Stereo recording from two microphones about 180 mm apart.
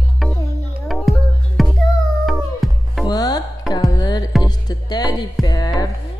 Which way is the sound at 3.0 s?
20° left (ahead or behind).